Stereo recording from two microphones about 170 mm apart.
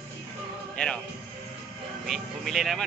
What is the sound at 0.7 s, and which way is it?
Speech, 5° left (ahead or behind).